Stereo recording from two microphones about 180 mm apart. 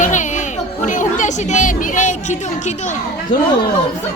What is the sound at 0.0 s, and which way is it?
Chatter, 45° left (ahead or behind).